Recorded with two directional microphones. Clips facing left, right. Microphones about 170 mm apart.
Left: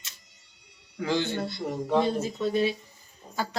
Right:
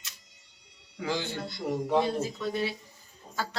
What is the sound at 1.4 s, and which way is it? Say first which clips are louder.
Speech: left 1 dB; 25° left (ahead or behind).